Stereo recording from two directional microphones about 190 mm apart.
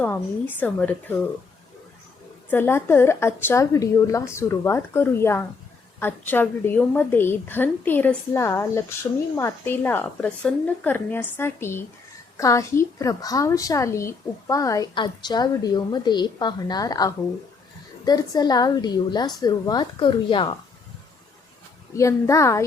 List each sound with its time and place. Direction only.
0.0 s a woman's voice: 10° left (ahead or behind)
2.5 s a woman's voice: 10° left (ahead or behind)
21.9 s a woman's voice: 15° left (ahead or behind)